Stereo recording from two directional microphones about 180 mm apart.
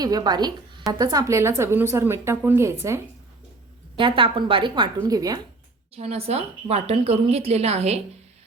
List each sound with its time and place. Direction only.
0.0 s a woman's voice: 20° right (ahead or behind)
3.9 s a woman's voice: 30° right (ahead or behind)
6.0 s a woman's voice: 35° right (ahead or behind)